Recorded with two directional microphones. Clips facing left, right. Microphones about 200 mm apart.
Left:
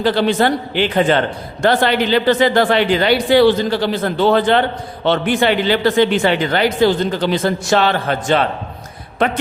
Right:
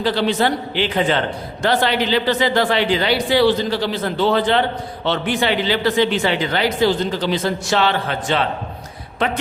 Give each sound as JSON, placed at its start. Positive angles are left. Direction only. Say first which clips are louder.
{"t": 0.0, "sound": "speech", "louder": "left 3 dB", "side_deg": 50}